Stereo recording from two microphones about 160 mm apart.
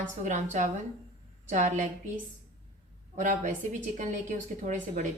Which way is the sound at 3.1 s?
50° right (ahead or behind).